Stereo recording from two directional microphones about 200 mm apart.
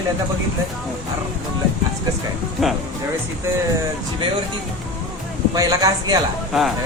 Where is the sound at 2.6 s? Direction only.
Centre (ahead or behind).